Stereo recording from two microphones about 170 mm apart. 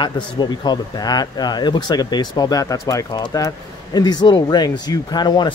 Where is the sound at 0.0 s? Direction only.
25° left (ahead or behind).